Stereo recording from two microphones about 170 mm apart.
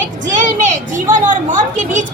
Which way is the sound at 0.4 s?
50° right (ahead or behind).